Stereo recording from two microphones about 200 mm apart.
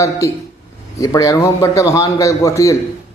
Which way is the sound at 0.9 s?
15° left (ahead or behind).